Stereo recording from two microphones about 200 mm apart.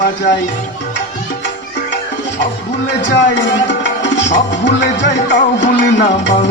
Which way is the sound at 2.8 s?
60° left (ahead or behind).